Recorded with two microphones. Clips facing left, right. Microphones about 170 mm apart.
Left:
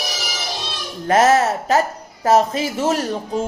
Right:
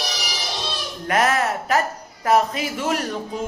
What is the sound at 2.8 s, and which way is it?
Speech, 35° left (ahead or behind).